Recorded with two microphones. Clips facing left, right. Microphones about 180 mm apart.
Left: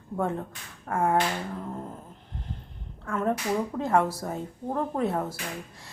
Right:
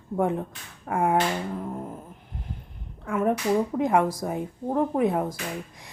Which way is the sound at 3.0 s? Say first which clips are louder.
Right 4 dB; 15° right (ahead or behind).